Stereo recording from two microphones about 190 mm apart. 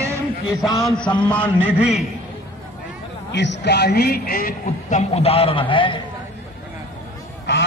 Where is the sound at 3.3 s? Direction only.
65° left (ahead or behind); by 6.0 s 25° left (ahead or behind).